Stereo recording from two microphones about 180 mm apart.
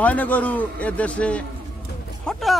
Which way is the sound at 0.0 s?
10° left (ahead or behind).